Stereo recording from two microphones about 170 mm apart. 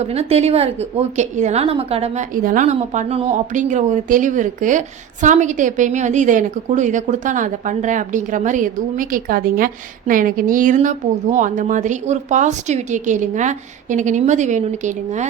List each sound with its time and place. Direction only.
0.0 s a woman's voice: 40° right (ahead or behind)
2.3 s a woman's voice: 55° right (ahead or behind)